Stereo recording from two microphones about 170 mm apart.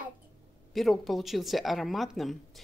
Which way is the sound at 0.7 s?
Centre (ahead or behind).